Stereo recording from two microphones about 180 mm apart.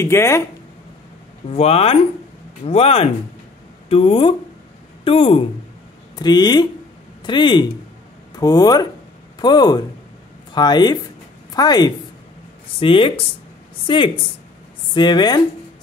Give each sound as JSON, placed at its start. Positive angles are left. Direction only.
{"t": 0.0, "sound": "speech", "side_deg": 15}
{"t": 1.5, "sound": "a woman's voice", "side_deg": 35}